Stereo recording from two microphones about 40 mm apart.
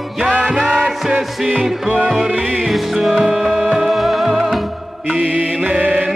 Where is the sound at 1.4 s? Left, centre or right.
Right.